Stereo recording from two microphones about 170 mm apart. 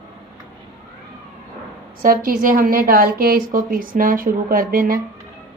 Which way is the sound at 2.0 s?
55° right (ahead or behind).